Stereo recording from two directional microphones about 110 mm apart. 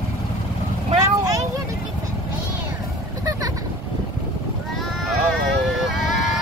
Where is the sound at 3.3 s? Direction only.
30° right (ahead or behind).